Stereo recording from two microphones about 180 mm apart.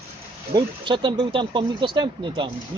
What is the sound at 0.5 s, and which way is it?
Speech, 25° right (ahead or behind).